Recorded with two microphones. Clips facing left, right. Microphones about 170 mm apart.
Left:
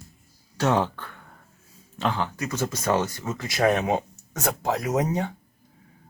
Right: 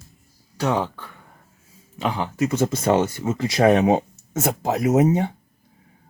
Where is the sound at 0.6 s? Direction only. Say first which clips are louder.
Even; 5° right (ahead or behind); by 5.2 s 25° right (ahead or behind).